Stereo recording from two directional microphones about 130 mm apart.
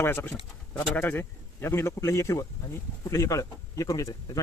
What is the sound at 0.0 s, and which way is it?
A man's voice, 15° left (ahead or behind).